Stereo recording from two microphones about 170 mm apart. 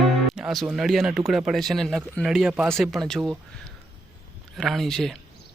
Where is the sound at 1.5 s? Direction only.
Centre (ahead or behind).